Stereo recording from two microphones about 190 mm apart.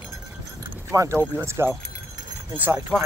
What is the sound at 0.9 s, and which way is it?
Speech, 15° right (ahead or behind).